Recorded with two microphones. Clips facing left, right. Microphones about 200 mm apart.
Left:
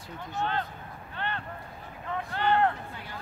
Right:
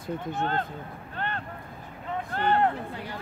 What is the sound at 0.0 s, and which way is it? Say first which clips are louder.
Speech: right 4 dB; 50° right (ahead or behind).